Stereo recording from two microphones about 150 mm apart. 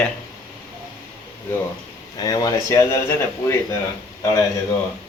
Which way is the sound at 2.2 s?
25° left (ahead or behind).